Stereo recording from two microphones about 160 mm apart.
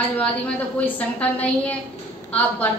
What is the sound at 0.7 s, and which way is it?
Speech, 10° left (ahead or behind).